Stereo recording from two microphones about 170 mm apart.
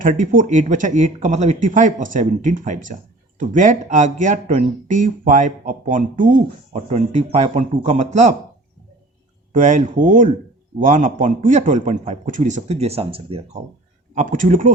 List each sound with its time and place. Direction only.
0.0 s speech: 50° right (ahead or behind)
9.5 s speech: 45° right (ahead or behind)
14.2 s speech: 50° right (ahead or behind)